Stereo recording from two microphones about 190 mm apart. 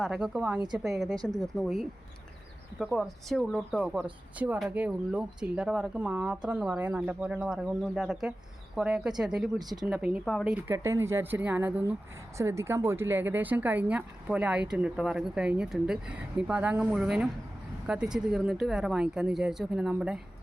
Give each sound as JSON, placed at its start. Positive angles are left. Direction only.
{"t": 0.0, "sound": "speech", "side_deg": 0}
{"t": 1.1, "sound": "speech", "side_deg": -20}
{"t": 1.4, "sound": "speech", "side_deg": 0}